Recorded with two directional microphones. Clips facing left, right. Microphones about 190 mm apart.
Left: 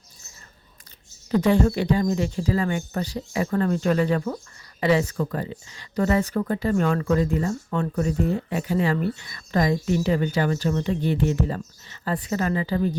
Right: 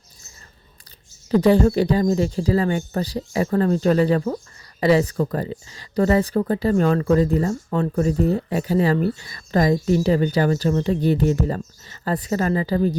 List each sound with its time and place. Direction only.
1.3 s speech: 35° right (ahead or behind)